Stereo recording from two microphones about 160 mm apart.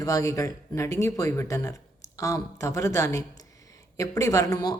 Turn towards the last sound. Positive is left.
turn(degrees=25)  # may be behind; listen again after turning